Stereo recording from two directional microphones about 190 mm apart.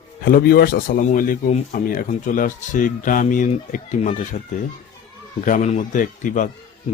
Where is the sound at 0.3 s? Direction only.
50° left (ahead or behind).